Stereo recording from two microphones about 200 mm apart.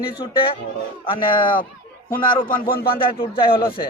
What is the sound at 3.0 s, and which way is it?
Speech, 25° left (ahead or behind).